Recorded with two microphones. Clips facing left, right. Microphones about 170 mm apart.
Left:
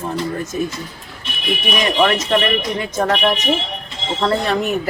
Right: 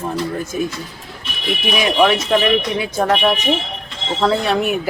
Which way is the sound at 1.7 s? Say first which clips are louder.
Right 2 dB; 5° right (ahead or behind).